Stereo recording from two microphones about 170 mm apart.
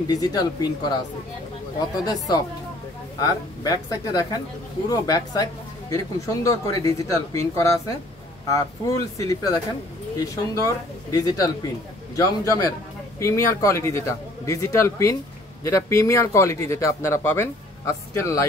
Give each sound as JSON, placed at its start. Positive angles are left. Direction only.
{"t": 0.1, "sound": "speech", "side_deg": 20}
{"t": 2.0, "sound": "speech", "side_deg": 25}